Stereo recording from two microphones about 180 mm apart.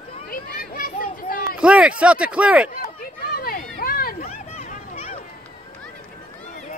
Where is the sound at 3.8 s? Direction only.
55° left (ahead or behind).